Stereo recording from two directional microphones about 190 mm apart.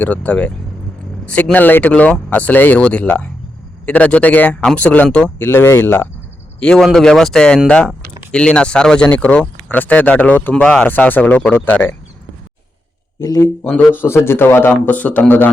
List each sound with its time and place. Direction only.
0.0 s speech: 10° left (ahead or behind)
13.1 s speech: 20° left (ahead or behind)
13.7 s speech: 10° left (ahead or behind)